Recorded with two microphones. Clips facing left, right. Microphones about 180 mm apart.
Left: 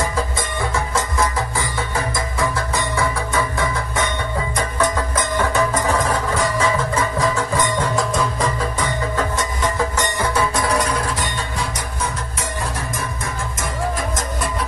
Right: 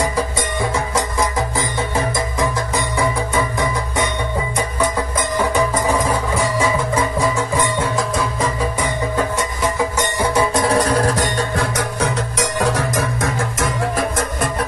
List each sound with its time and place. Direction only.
0.0 s music: 15° right (ahead or behind)
5.4 s music: 15° right (ahead or behind); by 14.5 s 65° right (ahead or behind)